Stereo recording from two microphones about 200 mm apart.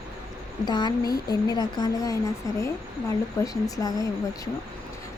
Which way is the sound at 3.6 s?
20° left (ahead or behind).